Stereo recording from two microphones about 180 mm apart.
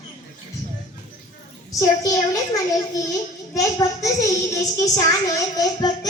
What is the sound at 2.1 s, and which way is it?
A child's voice, 20° left (ahead or behind).